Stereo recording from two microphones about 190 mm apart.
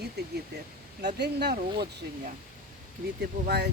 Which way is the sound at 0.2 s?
60° right (ahead or behind).